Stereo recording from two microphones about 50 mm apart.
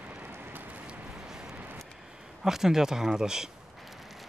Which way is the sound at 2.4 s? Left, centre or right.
Centre.